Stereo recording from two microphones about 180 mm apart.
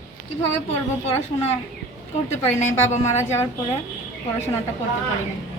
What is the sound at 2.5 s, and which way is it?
Speech, 40° left (ahead or behind).